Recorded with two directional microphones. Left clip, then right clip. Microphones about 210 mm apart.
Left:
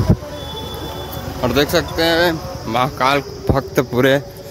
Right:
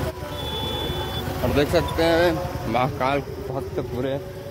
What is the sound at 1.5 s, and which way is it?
Speech, 20° left (ahead or behind).